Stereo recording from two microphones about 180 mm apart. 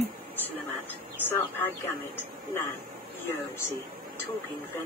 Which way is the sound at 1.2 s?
10° left (ahead or behind).